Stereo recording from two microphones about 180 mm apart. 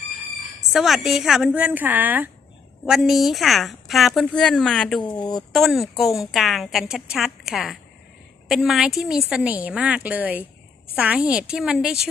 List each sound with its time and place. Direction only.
0.7 s a woman's voice: centre (ahead or behind)
5.1 s speech: 25° left (ahead or behind)
5.5 s a woman's voice: centre (ahead or behind)